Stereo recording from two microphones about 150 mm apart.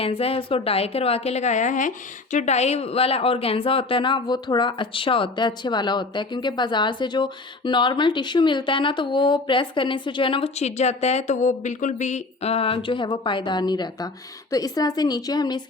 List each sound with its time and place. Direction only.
0.0 s a woman's voice: 40° left (ahead or behind)